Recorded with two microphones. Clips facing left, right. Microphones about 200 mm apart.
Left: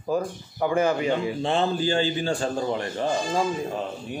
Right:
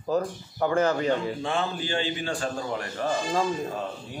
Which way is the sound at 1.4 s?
25° left (ahead or behind).